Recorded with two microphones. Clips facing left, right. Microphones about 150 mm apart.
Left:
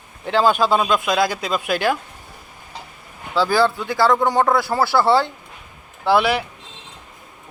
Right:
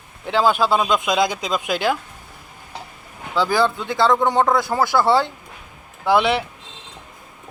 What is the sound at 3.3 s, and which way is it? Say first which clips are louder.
Speech: left 1 dB; 20° right (ahead or behind).